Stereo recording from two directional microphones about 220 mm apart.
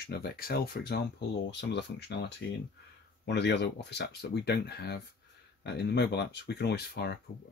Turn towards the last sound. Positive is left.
turn(degrees=45)  # may be behind; listen again after turning